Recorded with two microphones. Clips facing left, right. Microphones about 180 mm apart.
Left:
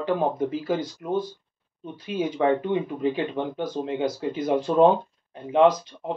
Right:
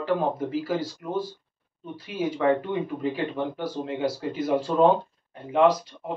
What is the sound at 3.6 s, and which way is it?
Speech, 20° left (ahead or behind).